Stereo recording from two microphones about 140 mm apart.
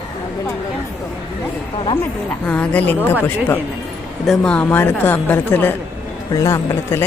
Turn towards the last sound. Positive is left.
turn(degrees=20)  # may be behind; listen again after turning